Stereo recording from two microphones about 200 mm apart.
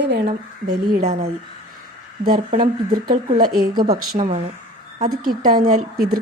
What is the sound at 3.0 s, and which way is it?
Speech, 45° right (ahead or behind).